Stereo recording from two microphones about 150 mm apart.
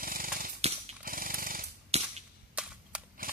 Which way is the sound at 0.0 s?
75° right (ahead or behind).